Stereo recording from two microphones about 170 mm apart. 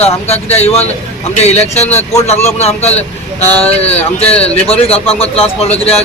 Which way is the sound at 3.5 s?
10° left (ahead or behind).